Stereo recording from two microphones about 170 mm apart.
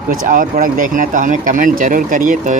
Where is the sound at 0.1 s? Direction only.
55° right (ahead or behind).